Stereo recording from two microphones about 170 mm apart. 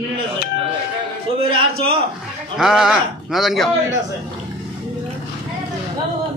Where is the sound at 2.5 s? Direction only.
5° right (ahead or behind).